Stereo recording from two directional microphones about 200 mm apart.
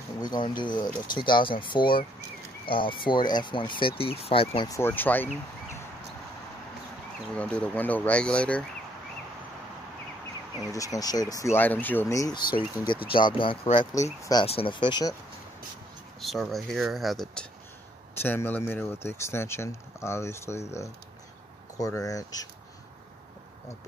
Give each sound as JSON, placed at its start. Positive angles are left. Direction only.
{"t": 0.2, "sound": "speech", "side_deg": 20}
{"t": 4.7, "sound": "speech", "side_deg": 10}
{"t": 7.3, "sound": "speech", "side_deg": 5}
{"t": 10.7, "sound": "speech", "side_deg": 15}
{"t": 14.4, "sound": "speech", "side_deg": 30}
{"t": 16.2, "sound": "speech", "side_deg": 0}